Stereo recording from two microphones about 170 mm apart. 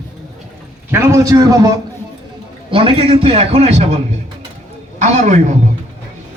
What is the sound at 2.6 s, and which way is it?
A man's voice, 35° right (ahead or behind).